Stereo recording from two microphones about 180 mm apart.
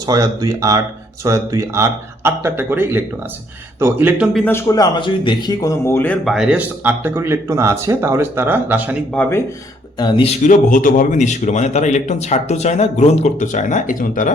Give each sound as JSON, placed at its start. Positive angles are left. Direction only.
{"t": 0.0, "sound": "speech", "side_deg": -20}
{"t": 4.4, "sound": "a man's voice", "side_deg": 10}
{"t": 6.2, "sound": "speech", "side_deg": -5}
{"t": 10.0, "sound": "a man's voice", "side_deg": 25}
{"t": 10.4, "sound": "speech", "side_deg": 45}